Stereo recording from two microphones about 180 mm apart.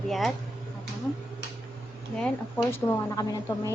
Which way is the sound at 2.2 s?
15° left (ahead or behind).